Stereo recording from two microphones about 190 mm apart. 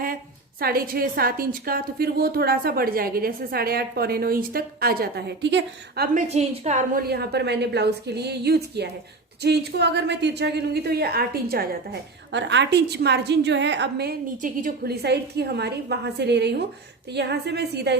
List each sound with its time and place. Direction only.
0.6 s a woman's voice: 50° right (ahead or behind)
6.1 s a woman's voice: 35° right (ahead or behind); by 11.8 s 55° right (ahead or behind)
12.3 s a woman's voice: 70° right (ahead or behind); by 14.9 s 50° right (ahead or behind)
15.0 s a woman's voice: 60° right (ahead or behind)